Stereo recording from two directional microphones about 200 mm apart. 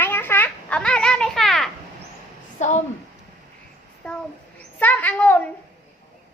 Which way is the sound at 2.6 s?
35° left (ahead or behind).